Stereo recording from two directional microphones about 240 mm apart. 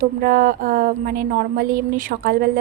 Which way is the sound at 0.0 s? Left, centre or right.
Right.